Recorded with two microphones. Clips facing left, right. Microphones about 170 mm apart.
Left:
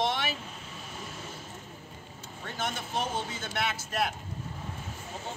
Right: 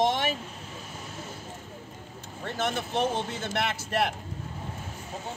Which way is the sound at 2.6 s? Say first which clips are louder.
Right 6 dB; 60° right (ahead or behind).